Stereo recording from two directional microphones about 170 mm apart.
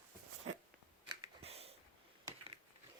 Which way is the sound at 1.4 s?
35° right (ahead or behind).